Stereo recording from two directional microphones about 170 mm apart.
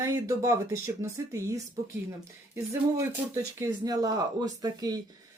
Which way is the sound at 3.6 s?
20° right (ahead or behind).